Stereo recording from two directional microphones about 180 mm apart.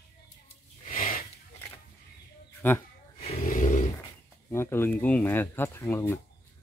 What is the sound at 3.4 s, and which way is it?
Dog, 50° left (ahead or behind).